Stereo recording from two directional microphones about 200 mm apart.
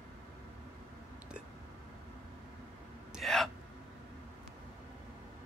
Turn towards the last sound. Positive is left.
turn(degrees=0)  # may be behind; listen again after turning